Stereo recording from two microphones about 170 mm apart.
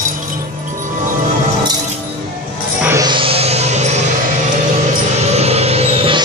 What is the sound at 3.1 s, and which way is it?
Music, 30° right (ahead or behind).